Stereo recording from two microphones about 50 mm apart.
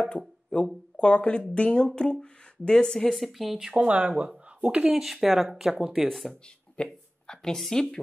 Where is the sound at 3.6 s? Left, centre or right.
Right.